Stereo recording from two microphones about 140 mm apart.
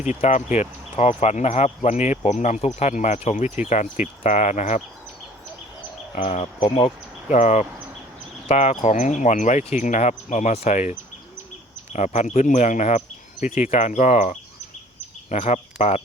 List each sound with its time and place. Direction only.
0.1 s speech: 60° left (ahead or behind)
6.1 s speech: 55° left (ahead or behind)
6.6 s speech: 40° left (ahead or behind)
7.3 s speech: 55° left (ahead or behind)
11.9 s speech: 55° left (ahead or behind)